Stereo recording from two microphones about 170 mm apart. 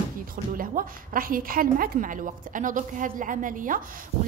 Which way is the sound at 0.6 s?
55° right (ahead or behind).